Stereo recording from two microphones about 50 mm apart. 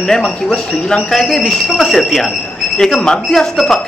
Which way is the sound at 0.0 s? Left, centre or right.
Centre.